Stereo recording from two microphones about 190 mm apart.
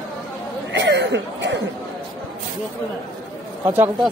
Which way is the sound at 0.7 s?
65° right (ahead or behind).